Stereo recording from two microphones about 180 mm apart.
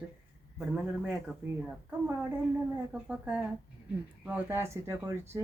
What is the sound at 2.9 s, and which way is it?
Speech, 5° right (ahead or behind).